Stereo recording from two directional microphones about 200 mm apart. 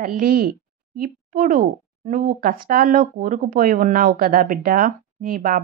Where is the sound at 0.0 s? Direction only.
45° right (ahead or behind).